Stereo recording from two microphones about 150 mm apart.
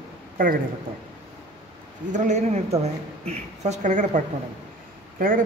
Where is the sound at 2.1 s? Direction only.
50° right (ahead or behind).